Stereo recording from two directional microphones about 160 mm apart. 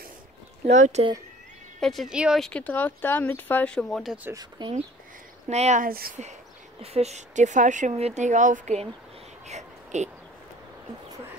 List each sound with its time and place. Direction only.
0.7 s speech: 50° right (ahead or behind)
1.8 s speech: centre (ahead or behind)
4.2 s speech: 20° right (ahead or behind)
5.5 s speech: 45° right (ahead or behind)
5.9 s speech: 65° right (ahead or behind)
6.8 s speech: 40° right (ahead or behind)
9.5 s a sound: 45° right (ahead or behind)